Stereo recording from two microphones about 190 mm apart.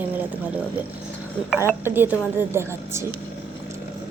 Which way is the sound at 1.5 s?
10° right (ahead or behind).